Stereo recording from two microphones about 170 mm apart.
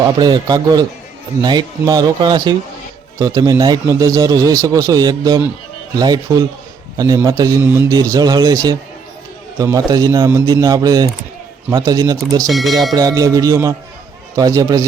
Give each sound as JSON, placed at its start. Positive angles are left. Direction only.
{"t": 0.0, "sound": "a man's voice", "side_deg": -25}
{"t": 12.5, "sound": "speech", "side_deg": 0}
{"t": 12.9, "sound": "a man's voice", "side_deg": -20}